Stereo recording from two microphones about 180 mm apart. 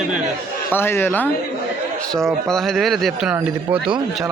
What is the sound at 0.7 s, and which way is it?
Speech, 15° left (ahead or behind).